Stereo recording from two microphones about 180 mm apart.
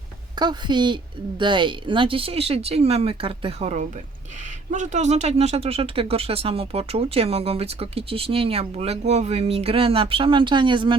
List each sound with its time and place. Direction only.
0.3 s a woman's voice: 25° right (ahead or behind)